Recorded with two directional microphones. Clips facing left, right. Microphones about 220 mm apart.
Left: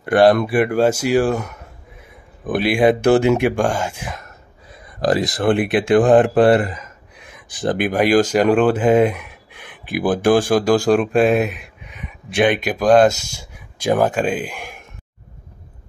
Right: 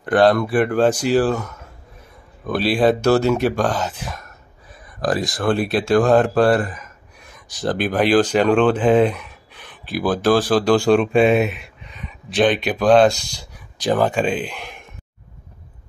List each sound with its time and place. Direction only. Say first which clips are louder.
0.0 s speech: left 2 dB; 10° left (ahead or behind)
5.0 s speech: left 3 dB; 25° left (ahead or behind)
10.9 s speech: right 1 dB; centre (ahead or behind)
11.9 s a sound: left 1 dB; 10° left (ahead or behind)
12.7 s speech: left 1 dB; 5° left (ahead or behind)